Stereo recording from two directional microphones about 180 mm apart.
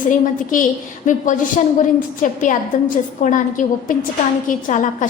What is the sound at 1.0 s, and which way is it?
A woman's voice, 45° left (ahead or behind).